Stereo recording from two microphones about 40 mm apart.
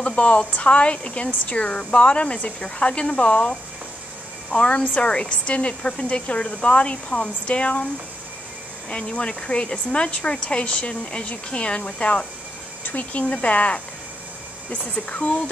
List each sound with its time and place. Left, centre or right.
0.0 s a sound: left
0.4 s speech: left
8.9 s speech: left
15.0 s speech: left